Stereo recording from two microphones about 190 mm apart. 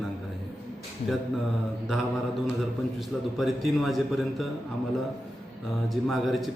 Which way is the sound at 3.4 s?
Centre (ahead or behind).